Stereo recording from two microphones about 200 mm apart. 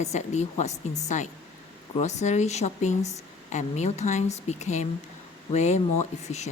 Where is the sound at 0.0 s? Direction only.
35° left (ahead or behind).